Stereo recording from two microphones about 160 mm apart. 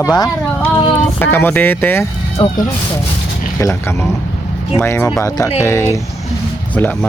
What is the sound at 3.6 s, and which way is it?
Speech, 15° left (ahead or behind).